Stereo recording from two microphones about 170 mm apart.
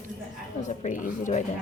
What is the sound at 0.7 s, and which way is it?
Speech, 45° left (ahead or behind).